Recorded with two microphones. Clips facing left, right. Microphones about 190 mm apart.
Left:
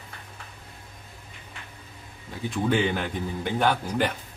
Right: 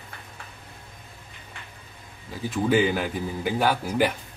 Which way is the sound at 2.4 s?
5° right (ahead or behind).